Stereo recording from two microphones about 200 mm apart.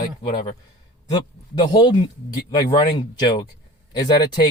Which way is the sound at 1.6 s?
25° left (ahead or behind).